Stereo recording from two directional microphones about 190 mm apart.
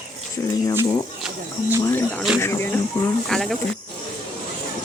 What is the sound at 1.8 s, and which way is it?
Speech, 15° left (ahead or behind).